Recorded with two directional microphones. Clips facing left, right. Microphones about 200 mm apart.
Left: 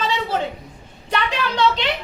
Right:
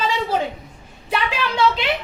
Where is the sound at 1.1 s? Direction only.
5° right (ahead or behind).